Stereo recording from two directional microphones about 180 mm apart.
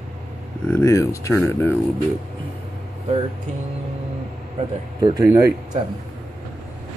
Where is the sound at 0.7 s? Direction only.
15° left (ahead or behind).